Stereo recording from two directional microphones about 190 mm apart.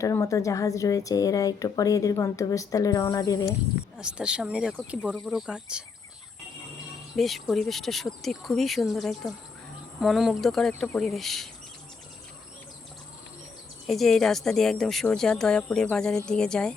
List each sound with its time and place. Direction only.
0.0 s speech: 15° left (ahead or behind)
3.9 s speech: 5° right (ahead or behind)
7.2 s speech: centre (ahead or behind)
13.8 s speech: centre (ahead or behind)